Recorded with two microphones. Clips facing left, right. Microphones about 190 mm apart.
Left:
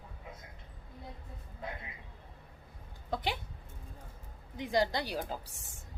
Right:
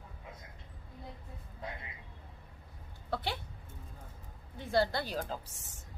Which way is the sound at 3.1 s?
15° left (ahead or behind).